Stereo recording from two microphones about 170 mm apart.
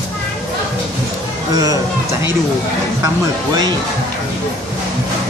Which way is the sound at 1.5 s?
20° right (ahead or behind).